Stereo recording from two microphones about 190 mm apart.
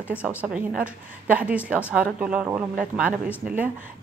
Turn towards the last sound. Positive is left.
turn(degrees=-10)  # may be behind; listen again after turning